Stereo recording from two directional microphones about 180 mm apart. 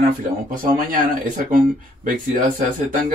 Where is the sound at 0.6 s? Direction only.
50° right (ahead or behind).